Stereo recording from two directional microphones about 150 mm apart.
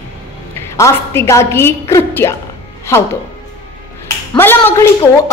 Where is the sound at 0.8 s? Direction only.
20° left (ahead or behind).